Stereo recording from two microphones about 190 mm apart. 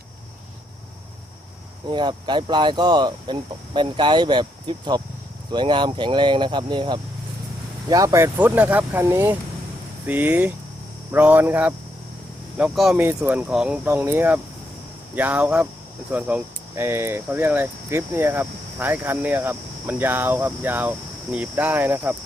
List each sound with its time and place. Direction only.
1.9 s speech: 25° right (ahead or behind)